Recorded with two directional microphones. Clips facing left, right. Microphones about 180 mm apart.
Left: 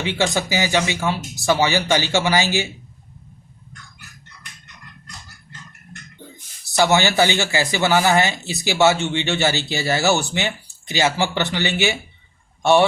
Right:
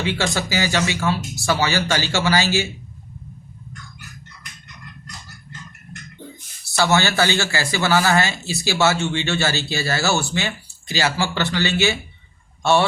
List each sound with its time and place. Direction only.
0.0 s speech: 20° left (ahead or behind)
6.7 s speech: 15° left (ahead or behind)